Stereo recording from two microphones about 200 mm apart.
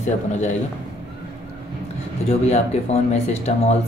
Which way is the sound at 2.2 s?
30° left (ahead or behind).